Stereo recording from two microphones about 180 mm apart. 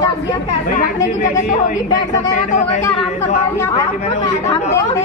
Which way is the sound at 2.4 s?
45° left (ahead or behind).